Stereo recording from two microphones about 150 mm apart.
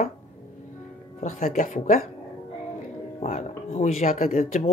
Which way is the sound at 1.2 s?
50° left (ahead or behind).